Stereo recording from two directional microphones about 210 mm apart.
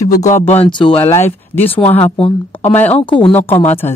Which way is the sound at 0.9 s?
10° left (ahead or behind).